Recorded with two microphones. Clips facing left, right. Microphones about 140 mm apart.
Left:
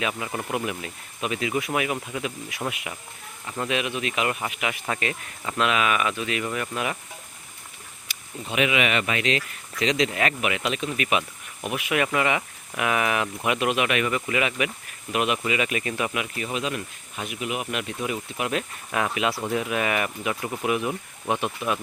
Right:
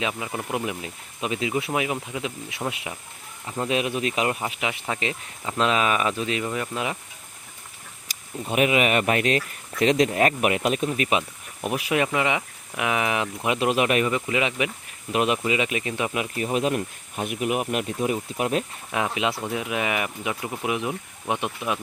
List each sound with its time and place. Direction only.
0.3 s speech: 5° right (ahead or behind)
0.5 s speech: 20° right (ahead or behind)
3.7 s speech: 35° right (ahead or behind)
6.4 s speech: 20° right (ahead or behind)
8.0 s speech: 45° right (ahead or behind)
12.0 s speech: 20° right (ahead or behind); by 14.1 s 35° right (ahead or behind)
14.1 s speech: 25° right (ahead or behind)
16.1 s speech: 30° right (ahead or behind)
18.9 s speech: 20° right (ahead or behind)